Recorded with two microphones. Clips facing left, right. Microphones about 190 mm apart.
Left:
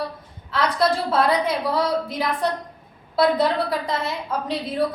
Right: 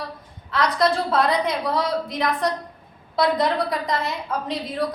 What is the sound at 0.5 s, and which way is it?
A woman's voice, 5° left (ahead or behind).